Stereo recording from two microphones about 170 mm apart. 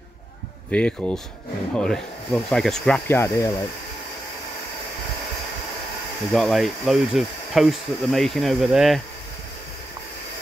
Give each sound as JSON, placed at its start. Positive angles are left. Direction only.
{"t": 0.7, "sound": "speech", "side_deg": 5}
{"t": 3.1, "sound": "speech", "side_deg": 15}
{"t": 6.3, "sound": "speech", "side_deg": 0}